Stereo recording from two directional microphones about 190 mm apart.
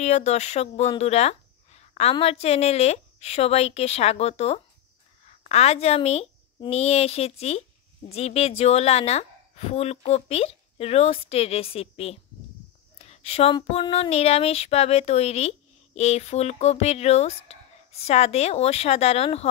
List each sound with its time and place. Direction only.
0.0 s speech: 35° left (ahead or behind)